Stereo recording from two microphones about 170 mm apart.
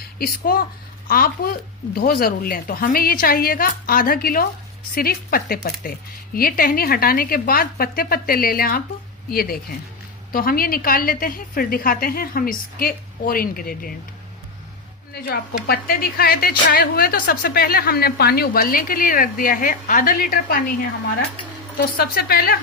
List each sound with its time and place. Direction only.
0.2 s a woman's voice: 60° left (ahead or behind)
15.1 s a woman's voice: 70° left (ahead or behind)